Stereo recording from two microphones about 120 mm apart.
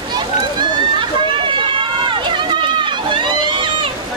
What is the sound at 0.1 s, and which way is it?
Run, 35° right (ahead or behind).